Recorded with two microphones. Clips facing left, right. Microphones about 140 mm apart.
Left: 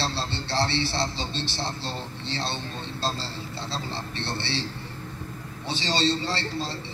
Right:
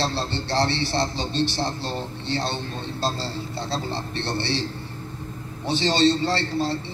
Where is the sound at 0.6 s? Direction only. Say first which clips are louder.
Right 3 dB; 45° right (ahead or behind).